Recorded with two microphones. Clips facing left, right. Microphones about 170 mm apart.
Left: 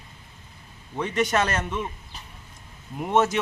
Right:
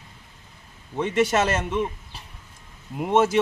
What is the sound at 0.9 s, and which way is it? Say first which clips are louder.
Speech: right 3 dB; 25° right (ahead or behind).